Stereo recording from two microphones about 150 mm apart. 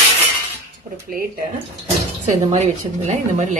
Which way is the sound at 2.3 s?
50° right (ahead or behind).